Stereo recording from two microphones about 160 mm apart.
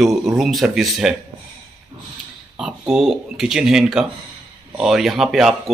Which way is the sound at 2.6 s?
5° right (ahead or behind).